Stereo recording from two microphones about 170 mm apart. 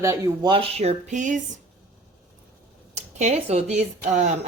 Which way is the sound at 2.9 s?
40° right (ahead or behind).